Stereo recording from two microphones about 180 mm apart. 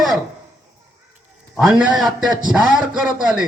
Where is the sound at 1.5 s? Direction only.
5° right (ahead or behind).